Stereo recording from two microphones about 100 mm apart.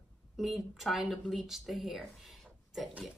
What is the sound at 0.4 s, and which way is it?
Speech, centre (ahead or behind).